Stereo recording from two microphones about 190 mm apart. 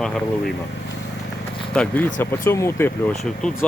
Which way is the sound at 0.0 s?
5° left (ahead or behind).